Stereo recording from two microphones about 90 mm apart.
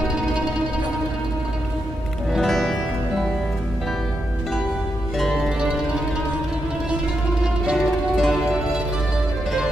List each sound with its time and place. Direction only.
2.3 s music: centre (ahead or behind)
5.2 s music: centre (ahead or behind)
7.6 s music: 5° right (ahead or behind)